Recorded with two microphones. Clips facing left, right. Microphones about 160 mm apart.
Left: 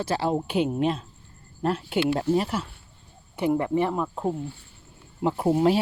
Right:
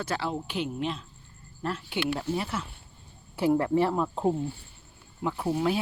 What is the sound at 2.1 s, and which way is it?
Speech, 40° left (ahead or behind).